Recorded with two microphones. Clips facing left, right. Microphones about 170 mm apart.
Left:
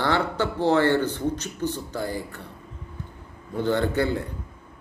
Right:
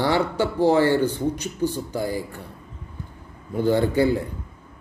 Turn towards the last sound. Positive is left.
turn(degrees=-10)  # may be behind; listen again after turning